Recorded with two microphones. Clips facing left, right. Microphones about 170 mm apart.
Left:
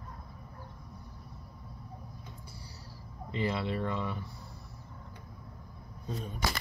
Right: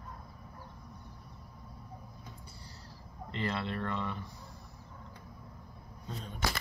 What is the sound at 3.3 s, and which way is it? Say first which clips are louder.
Speech: left 3 dB; 10° left (ahead or behind).